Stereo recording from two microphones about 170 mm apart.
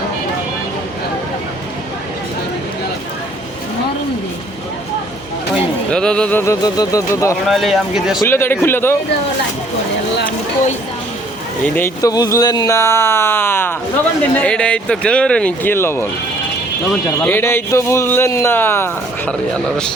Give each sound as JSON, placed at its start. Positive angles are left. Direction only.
{"t": 5.9, "sound": "a man's voice", "side_deg": 5}
{"t": 7.4, "sound": "speech", "side_deg": 0}
{"t": 8.3, "sound": "a man's voice", "side_deg": 15}
{"t": 11.6, "sound": "a man's voice", "side_deg": 15}
{"t": 17.2, "sound": "a man's voice", "side_deg": 10}